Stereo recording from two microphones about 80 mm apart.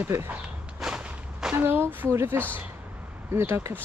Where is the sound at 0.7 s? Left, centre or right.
Centre.